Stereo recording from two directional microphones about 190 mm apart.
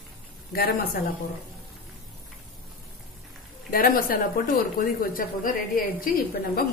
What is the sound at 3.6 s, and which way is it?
A woman's voice, 50° left (ahead or behind).